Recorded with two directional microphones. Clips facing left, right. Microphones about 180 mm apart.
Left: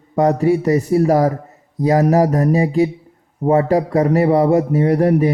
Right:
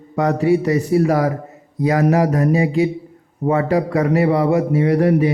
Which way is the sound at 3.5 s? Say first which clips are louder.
Left 2 dB; 45° left (ahead or behind).